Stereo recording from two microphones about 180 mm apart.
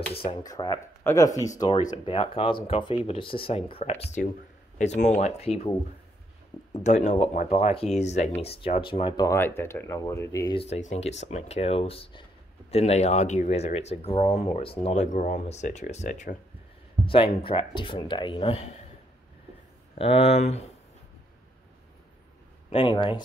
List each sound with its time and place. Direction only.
0.4 s speech: 20° left (ahead or behind)
6.8 s speech: 40° left (ahead or behind); by 10.5 s 15° left (ahead or behind)
10.5 s speech: 35° left (ahead or behind)
17.0 s speech: 30° left (ahead or behind)
20.0 s speech: 35° left (ahead or behind)
22.7 s speech: 30° left (ahead or behind)